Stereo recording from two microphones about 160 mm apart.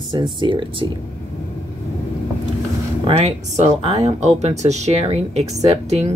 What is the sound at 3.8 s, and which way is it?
Speech, 45° right (ahead or behind).